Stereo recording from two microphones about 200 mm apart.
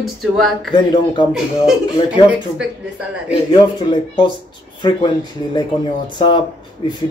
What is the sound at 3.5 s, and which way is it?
Speech, 25° left (ahead or behind).